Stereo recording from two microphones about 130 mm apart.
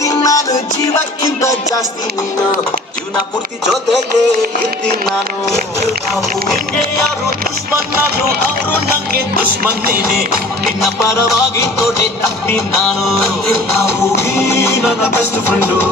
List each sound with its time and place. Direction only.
0.0 s music: 25° left (ahead or behind)
11.0 s music: 20° left (ahead or behind)
14.0 s music: 20° left (ahead or behind)